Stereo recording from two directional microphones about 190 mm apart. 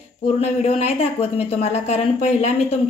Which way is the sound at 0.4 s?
35° left (ahead or behind).